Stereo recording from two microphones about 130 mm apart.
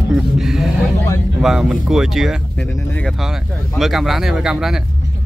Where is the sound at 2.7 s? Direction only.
25° left (ahead or behind).